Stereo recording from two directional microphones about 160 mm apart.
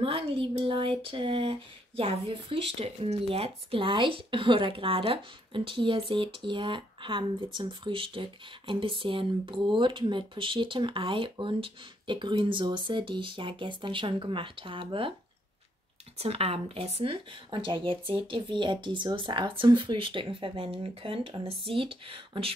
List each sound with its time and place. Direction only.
0.0 s speech: 35° right (ahead or behind)
16.2 s speech: 40° right (ahead or behind)